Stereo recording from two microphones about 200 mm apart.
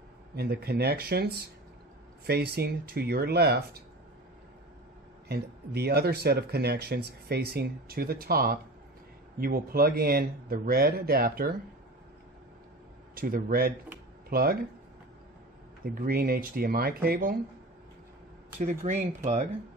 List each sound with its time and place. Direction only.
0.4 s speech: 55° right (ahead or behind)
5.3 s speech: 55° right (ahead or behind)
13.1 s speech: 45° right (ahead or behind)
15.8 s speech: 50° right (ahead or behind)
18.6 s speech: 35° right (ahead or behind)